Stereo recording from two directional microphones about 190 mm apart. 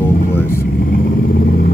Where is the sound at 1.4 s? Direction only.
50° left (ahead or behind).